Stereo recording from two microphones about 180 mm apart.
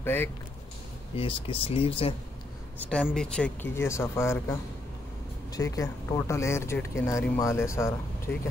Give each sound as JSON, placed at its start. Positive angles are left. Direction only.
{"t": 0.0, "sound": "speech", "side_deg": 10}
{"t": 1.1, "sound": "speech", "side_deg": 30}
{"t": 2.9, "sound": "speech", "side_deg": 5}